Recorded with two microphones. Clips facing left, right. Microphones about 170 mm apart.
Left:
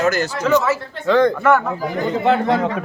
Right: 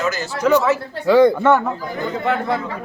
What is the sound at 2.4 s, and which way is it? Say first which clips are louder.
Speech: left 5 dB; 85° left.